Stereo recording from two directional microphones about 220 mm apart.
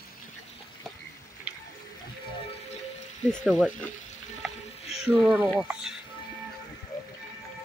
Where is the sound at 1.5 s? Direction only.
5° right (ahead or behind).